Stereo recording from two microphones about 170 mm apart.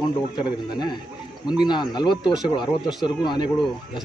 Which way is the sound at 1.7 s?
25° left (ahead or behind).